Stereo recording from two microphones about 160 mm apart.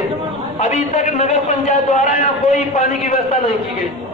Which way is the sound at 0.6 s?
45° left (ahead or behind).